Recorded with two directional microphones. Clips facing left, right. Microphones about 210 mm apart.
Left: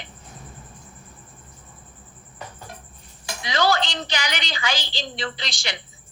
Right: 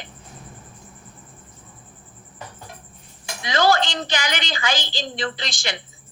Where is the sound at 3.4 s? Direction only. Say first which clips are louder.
Right 3 dB; 50° right (ahead or behind).